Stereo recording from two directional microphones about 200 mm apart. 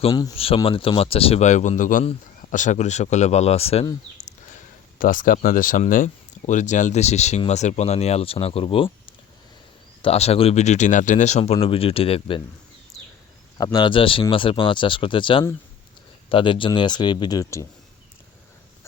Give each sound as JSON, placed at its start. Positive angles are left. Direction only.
{"t": 0.1, "sound": "speech", "side_deg": 20}
{"t": 0.3, "sound": "speech", "side_deg": 30}
{"t": 13.6, "sound": "speech", "side_deg": 20}